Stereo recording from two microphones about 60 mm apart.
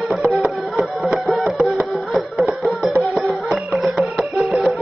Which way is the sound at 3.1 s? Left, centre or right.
Centre.